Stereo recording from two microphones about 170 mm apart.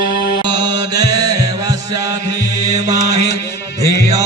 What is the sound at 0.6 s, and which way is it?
Mantra, 20° right (ahead or behind).